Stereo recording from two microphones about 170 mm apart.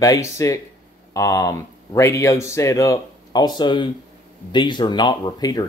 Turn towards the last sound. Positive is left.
turn(degrees=20)  # may be behind; listen again after turning